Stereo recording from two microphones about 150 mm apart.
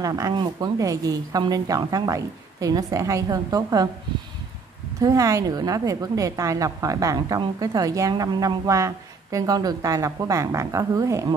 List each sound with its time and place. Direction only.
0.0 s a woman's voice: 20° right (ahead or behind)
4.9 s a woman's voice: 20° right (ahead or behind)